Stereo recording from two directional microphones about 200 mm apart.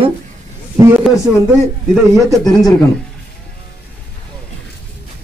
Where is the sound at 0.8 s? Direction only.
15° right (ahead or behind).